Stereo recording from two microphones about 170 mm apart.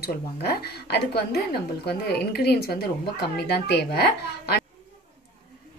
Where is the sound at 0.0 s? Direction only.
70° left (ahead or behind).